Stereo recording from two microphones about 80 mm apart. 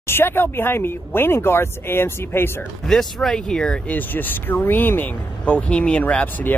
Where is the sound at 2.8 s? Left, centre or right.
Centre.